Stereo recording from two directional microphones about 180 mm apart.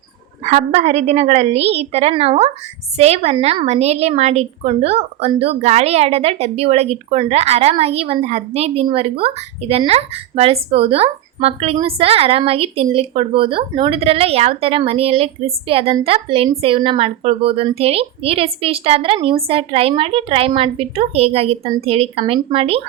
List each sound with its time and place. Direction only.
0.4 s a woman's voice: 40° right (ahead or behind)